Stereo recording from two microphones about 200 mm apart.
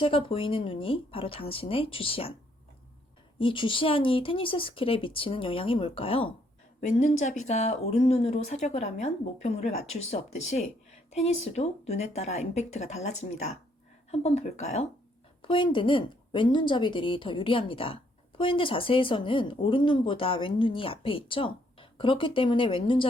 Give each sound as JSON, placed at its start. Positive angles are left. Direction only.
{"t": 0.0, "sound": "a woman's voice", "side_deg": 25}
{"t": 3.3, "sound": "a woman's voice", "side_deg": 25}